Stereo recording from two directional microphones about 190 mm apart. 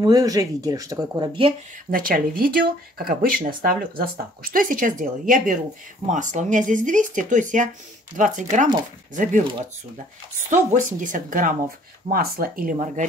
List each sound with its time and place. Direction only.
0.0 s speech: 20° right (ahead or behind)
1.9 s speech: 50° right (ahead or behind)
10.5 s speech: 40° right (ahead or behind)